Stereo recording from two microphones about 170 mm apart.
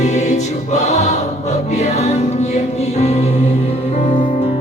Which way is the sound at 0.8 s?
40° left (ahead or behind).